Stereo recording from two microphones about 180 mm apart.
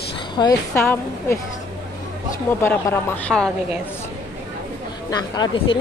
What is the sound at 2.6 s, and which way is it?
Speech, 15° left (ahead or behind).